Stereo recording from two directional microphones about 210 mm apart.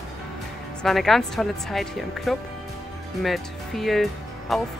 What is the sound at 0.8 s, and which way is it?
Speech, centre (ahead or behind).